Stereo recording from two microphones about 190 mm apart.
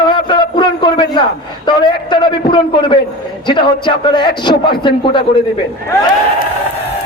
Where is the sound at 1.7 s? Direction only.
25° left (ahead or behind).